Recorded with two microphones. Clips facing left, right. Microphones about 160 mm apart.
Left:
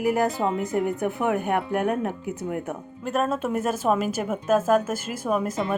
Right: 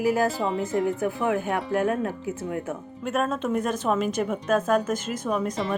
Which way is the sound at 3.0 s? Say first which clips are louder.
Left 1 dB; centre (ahead or behind).